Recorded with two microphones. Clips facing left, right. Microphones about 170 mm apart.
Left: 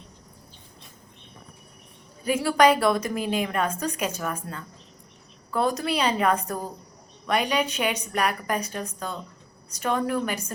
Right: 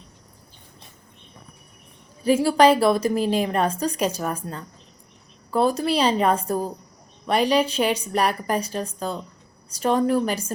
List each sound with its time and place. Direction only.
2.2 s a woman's voice: 30° right (ahead or behind)